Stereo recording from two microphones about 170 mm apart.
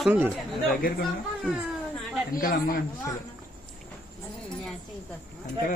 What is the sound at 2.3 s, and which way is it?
Speech, 55° left (ahead or behind).